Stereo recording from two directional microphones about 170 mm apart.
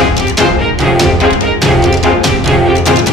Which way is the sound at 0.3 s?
Centre (ahead or behind).